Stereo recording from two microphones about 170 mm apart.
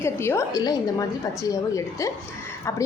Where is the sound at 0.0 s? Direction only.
15° left (ahead or behind).